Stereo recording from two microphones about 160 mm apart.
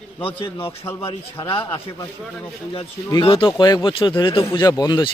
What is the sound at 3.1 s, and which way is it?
Speech, 30° left (ahead or behind).